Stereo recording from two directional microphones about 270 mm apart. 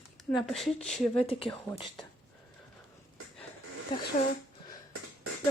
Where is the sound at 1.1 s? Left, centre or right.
Centre.